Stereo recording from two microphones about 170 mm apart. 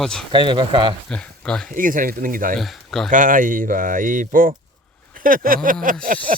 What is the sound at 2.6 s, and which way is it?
Speech, centre (ahead or behind).